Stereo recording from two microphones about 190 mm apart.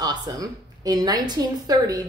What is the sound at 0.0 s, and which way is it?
A woman's voice, 20° right (ahead or behind).